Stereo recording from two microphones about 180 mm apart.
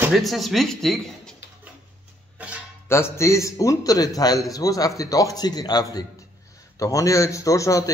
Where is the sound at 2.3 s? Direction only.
5° right (ahead or behind).